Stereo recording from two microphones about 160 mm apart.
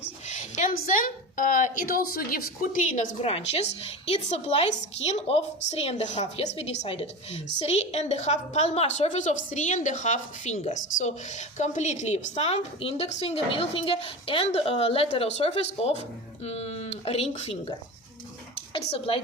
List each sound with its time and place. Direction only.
0.3 s a sound: 45° left (ahead or behind)
0.7 s a woman's voice: 60° left (ahead or behind)
3.2 s a woman's voice: 40° left (ahead or behind)
18.9 s a woman's voice: 35° left (ahead or behind)